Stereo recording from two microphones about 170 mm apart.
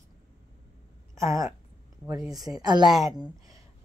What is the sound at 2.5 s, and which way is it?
Speech, 25° right (ahead or behind).